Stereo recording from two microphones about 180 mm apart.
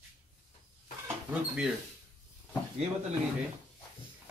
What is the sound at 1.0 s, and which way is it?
Speech, 5° right (ahead or behind).